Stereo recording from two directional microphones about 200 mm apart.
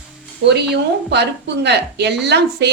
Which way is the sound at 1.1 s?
55° right (ahead or behind).